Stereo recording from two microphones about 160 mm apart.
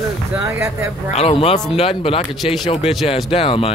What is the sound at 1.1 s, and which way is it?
Speech, 40° left (ahead or behind).